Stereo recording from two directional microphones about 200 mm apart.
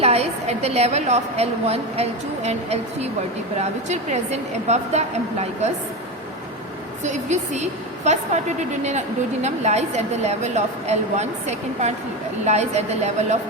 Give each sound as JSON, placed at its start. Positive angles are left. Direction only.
{"t": 0.0, "sound": "a woman's voice", "side_deg": -30}
{"t": 7.0, "sound": "a woman's voice", "side_deg": -35}